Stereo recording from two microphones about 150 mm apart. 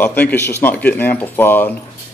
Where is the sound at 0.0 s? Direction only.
10° left (ahead or behind).